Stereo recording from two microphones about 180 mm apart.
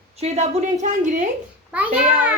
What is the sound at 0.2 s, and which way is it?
A woman's voice, 35° right (ahead or behind).